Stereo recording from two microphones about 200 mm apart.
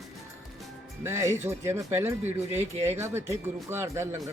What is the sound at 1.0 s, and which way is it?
Speech, 15° right (ahead or behind).